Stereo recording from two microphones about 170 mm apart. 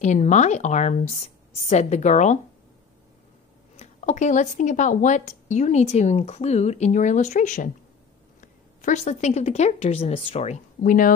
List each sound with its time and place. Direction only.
0.0 s a woman's voice: 45° left (ahead or behind)
3.7 s a woman's voice: 45° left (ahead or behind)